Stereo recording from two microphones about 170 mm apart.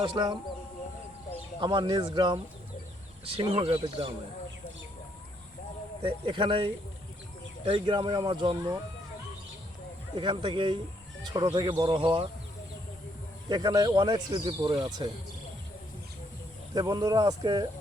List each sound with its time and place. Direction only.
0.0 s speech: 25° right (ahead or behind)
1.6 s speech: 25° right (ahead or behind)
6.0 s speech: 30° right (ahead or behind)
10.2 s speech: 30° right (ahead or behind)
13.5 s speech: 25° right (ahead or behind)
16.7 s speech: 20° right (ahead or behind)